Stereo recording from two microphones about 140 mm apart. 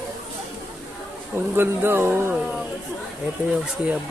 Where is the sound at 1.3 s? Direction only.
15° right (ahead or behind).